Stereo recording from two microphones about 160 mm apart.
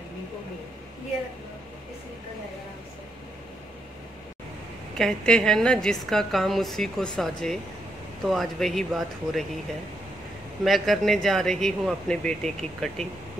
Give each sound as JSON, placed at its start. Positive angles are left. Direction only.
{"t": 4.9, "sound": "a woman's voice", "side_deg": 5}
{"t": 10.6, "sound": "a woman's voice", "side_deg": 0}